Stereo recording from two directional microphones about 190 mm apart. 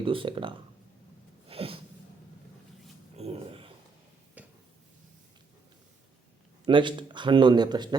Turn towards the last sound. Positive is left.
turn(degrees=-20)  # may be behind; listen again after turning